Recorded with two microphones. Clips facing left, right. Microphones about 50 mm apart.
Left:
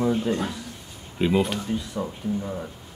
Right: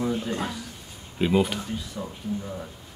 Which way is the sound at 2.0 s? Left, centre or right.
Centre.